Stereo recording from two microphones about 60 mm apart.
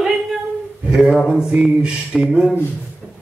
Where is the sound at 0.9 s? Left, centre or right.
Centre.